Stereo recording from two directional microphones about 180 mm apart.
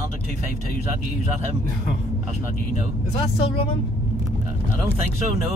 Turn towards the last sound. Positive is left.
turn(degrees=30)  # may be behind; listen again after turning